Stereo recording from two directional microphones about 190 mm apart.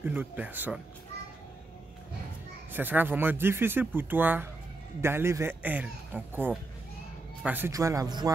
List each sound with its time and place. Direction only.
0.0 s speech: 10° right (ahead or behind)
2.7 s speech: 10° right (ahead or behind)